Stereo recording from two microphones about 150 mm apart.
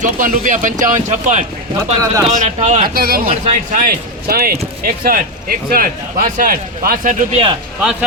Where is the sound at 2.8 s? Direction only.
85° right.